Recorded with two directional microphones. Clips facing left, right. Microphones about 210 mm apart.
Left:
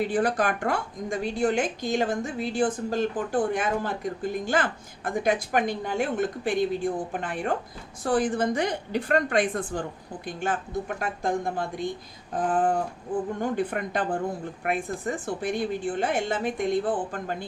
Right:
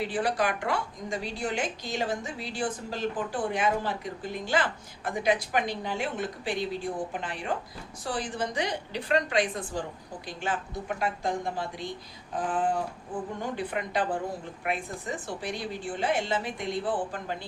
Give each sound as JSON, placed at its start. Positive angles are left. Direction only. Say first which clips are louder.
{"t": 0.0, "sound": "a woman's voice", "louder": "left 4 dB", "side_deg": 50}